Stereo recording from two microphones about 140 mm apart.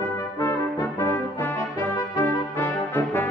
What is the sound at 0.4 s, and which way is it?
Brass instrument, 15° left (ahead or behind).